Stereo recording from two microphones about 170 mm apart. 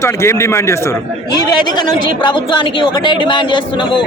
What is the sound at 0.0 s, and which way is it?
A man's voice, 15° left (ahead or behind).